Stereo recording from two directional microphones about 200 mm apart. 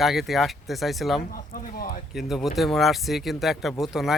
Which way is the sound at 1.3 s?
45° left (ahead or behind).